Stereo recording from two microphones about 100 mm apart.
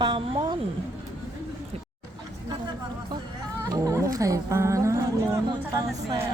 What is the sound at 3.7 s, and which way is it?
Speech, 35° right (ahead or behind).